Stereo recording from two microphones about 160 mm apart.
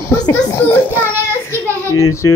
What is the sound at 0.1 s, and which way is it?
Children playing, 15° left (ahead or behind).